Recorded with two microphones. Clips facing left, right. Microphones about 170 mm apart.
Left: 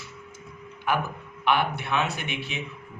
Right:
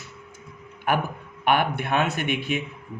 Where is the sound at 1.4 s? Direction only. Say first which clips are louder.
Right 2 dB; 50° right (ahead or behind).